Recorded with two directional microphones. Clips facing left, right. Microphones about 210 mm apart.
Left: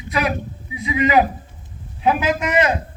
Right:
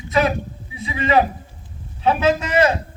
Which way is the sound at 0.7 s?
30° right (ahead or behind).